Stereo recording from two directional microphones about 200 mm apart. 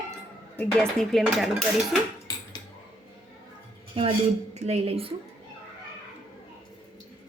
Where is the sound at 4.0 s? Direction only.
25° right (ahead or behind).